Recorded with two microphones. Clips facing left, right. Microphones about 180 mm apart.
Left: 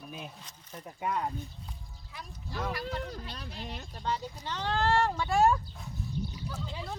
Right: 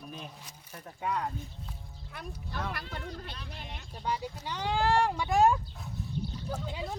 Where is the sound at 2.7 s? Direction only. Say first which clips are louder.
Left 4 dB; 55° right (ahead or behind).